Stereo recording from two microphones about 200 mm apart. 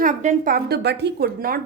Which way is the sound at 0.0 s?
40° right (ahead or behind).